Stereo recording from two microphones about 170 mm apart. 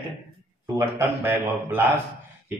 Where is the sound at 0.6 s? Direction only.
15° right (ahead or behind).